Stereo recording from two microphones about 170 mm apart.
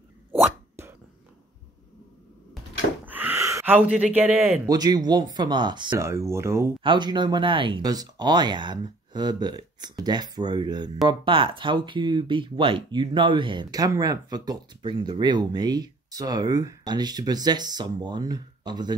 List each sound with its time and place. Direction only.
0.3 s dog: 15° right (ahead or behind)
3.1 s gasp: 10° right (ahead or behind)
4.6 s speech: 25° right (ahead or behind)
6.0 s speech: 15° right (ahead or behind)
6.8 s speech: 30° right (ahead or behind)